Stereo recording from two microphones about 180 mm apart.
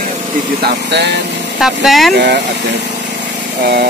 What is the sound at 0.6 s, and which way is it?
Speech, 70° right (ahead or behind).